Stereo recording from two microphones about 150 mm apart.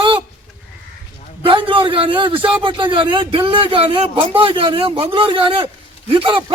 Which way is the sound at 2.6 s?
35° right (ahead or behind).